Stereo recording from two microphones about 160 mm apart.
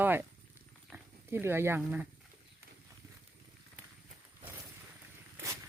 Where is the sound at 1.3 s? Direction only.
15° right (ahead or behind).